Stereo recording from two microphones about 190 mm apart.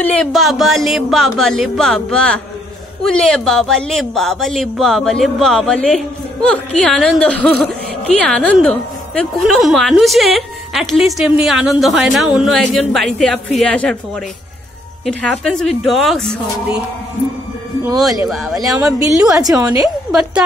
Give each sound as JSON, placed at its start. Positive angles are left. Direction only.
{"t": 0.0, "sound": "a woman's voice", "side_deg": 5}
{"t": 15.4, "sound": "a woman's voice", "side_deg": 0}
{"t": 18.2, "sound": "a woman's voice", "side_deg": 0}
{"t": 18.8, "sound": "a woman's voice", "side_deg": -15}
{"t": 20.1, "sound": "a woman's voice", "side_deg": -5}